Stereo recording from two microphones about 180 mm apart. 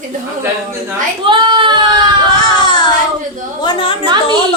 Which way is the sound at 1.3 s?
25° right (ahead or behind).